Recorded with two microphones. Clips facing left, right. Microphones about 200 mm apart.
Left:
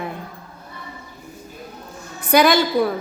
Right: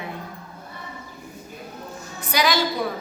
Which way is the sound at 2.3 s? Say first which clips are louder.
Left 8 dB; 55° left (ahead or behind).